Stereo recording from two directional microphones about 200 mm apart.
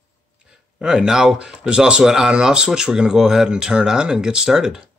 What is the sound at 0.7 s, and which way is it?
Speech, 5° right (ahead or behind).